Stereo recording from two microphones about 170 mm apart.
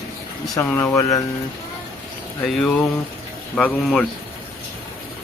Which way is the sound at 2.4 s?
5° left (ahead or behind).